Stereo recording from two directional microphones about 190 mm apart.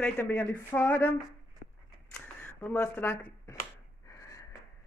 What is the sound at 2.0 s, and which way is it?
Camera, 10° left (ahead or behind).